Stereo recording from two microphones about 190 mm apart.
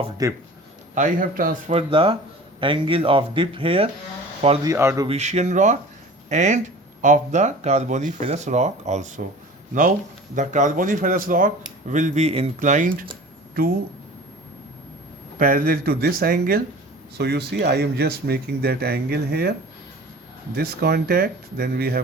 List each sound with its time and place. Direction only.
0.2 s speech: 20° right (ahead or behind)
0.9 s speech: 45° right (ahead or behind)
1.7 s speech: 25° right (ahead or behind)
4.6 s speech: 15° right (ahead or behind)
5.0 s speech: 35° right (ahead or behind)
10.3 s speech: 40° right (ahead or behind)
15.4 s speech: 50° right (ahead or behind)
20.6 s speech: 55° right (ahead or behind)